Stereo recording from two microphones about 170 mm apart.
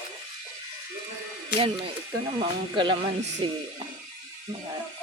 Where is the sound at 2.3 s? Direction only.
30° right (ahead or behind).